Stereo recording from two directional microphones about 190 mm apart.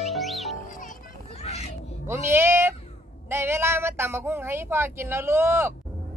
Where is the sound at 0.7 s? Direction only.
45° left (ahead or behind).